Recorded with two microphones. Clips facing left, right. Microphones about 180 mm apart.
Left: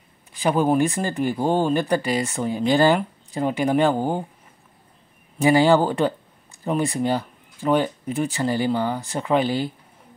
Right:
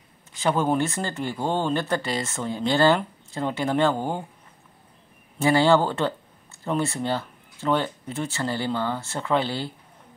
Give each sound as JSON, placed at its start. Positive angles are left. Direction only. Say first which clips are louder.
{"t": 0.3, "sound": "speech", "louder": "left 3 dB", "side_deg": 10}
{"t": 5.4, "sound": "speech", "louder": "left 3 dB", "side_deg": 15}